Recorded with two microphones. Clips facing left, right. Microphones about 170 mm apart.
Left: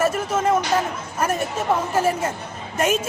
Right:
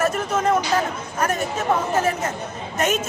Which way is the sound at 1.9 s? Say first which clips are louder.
Left 1 dB; 10° left (ahead or behind).